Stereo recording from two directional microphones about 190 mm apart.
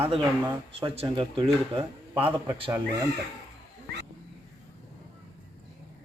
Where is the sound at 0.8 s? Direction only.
25° right (ahead or behind).